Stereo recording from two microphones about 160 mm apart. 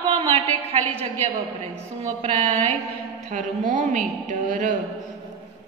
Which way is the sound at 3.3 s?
50° right (ahead or behind).